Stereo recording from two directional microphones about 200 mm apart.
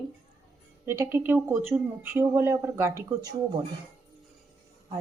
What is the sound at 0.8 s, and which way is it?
Speech, 10° right (ahead or behind).